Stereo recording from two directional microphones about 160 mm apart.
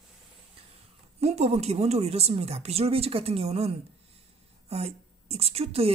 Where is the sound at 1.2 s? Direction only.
40° right (ahead or behind).